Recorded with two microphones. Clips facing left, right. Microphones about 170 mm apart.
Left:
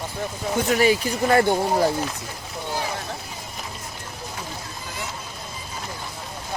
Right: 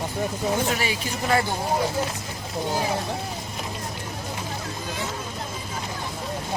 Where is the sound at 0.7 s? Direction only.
40° left (ahead or behind).